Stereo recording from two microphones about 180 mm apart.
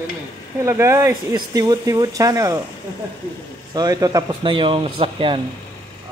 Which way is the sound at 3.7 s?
20° right (ahead or behind).